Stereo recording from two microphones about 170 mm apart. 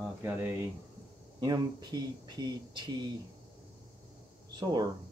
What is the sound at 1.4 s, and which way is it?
Speech, 25° right (ahead or behind).